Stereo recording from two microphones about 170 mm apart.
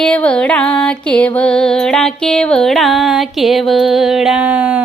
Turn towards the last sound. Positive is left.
turn(degrees=-5)  # may be behind; listen again after turning